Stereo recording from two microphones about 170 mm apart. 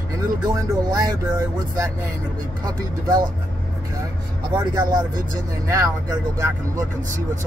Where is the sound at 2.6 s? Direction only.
20° right (ahead or behind).